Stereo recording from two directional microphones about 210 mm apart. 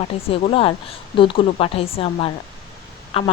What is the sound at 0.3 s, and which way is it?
Speech, 25° left (ahead or behind).